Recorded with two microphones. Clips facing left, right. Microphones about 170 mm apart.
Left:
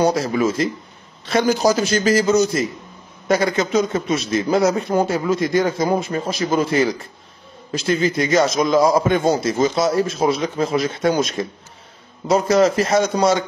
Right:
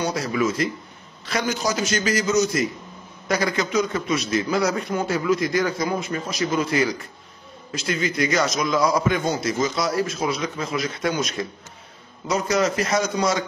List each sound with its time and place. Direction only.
0.0 s a man's voice: 30° left (ahead or behind)